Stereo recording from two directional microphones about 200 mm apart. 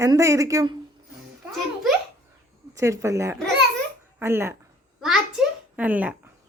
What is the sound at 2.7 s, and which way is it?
Speech, 15° right (ahead or behind).